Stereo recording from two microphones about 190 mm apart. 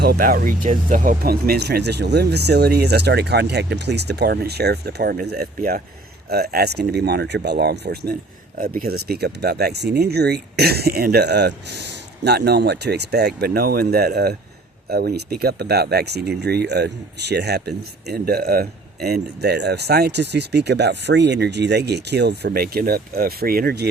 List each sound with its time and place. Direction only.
0.0 s speech: 50° right (ahead or behind)